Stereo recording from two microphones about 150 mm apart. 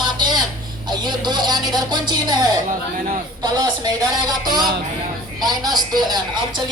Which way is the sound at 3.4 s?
25° right (ahead or behind).